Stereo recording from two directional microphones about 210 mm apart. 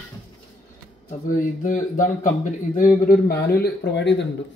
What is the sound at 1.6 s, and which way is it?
Speech, 40° left (ahead or behind).